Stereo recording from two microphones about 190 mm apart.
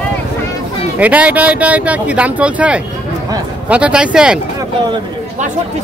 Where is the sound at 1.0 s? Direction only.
5° right (ahead or behind).